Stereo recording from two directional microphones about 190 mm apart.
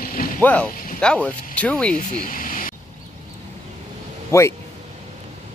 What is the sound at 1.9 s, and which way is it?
Vehicle, 45° left (ahead or behind).